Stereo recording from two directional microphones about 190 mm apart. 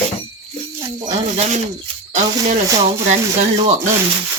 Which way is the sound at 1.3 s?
35° right (ahead or behind).